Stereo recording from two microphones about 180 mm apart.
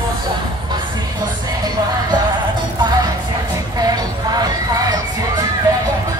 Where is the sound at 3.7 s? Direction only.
20° right (ahead or behind).